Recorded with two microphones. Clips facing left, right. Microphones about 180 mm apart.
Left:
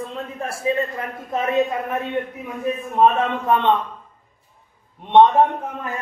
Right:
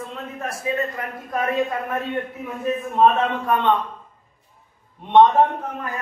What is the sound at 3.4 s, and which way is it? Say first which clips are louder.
Speech: left 3 dB; 25° left (ahead or behind).